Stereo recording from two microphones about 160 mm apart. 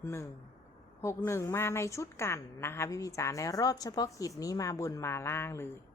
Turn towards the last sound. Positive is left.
turn(degrees=15)  # may be behind; listen again after turning